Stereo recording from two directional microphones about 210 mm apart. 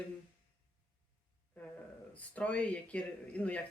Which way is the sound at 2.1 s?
5° left (ahead or behind).